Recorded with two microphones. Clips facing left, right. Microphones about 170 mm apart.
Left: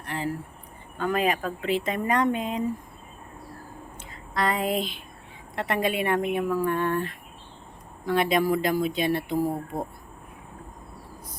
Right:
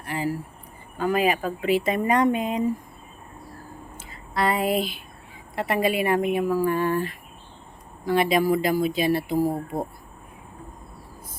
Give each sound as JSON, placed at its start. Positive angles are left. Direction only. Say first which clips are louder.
{"t": 0.0, "sound": "a sound", "louder": "right 3 dB", "side_deg": -5}
{"t": 0.9, "sound": "speech", "louder": "right 3 dB", "side_deg": -5}
{"t": 3.9, "sound": "speech", "louder": "right 2 dB", "side_deg": -5}